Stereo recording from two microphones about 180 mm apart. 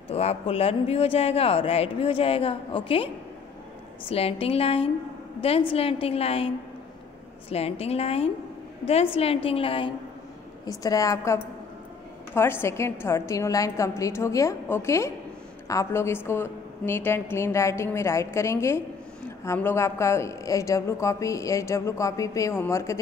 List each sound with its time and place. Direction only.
0.1 s a man's voice: 35° left (ahead or behind)
4.1 s a man's voice: 35° left (ahead or behind)
10.6 s a woman's voice: 20° left (ahead or behind)